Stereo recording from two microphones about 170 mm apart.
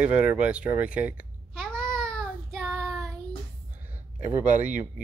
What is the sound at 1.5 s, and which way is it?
Child singing, 5° left (ahead or behind).